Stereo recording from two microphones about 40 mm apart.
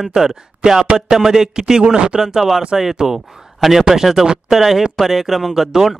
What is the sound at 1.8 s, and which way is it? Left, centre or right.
Speech, right.